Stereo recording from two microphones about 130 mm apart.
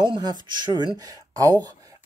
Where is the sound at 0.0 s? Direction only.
35° right (ahead or behind).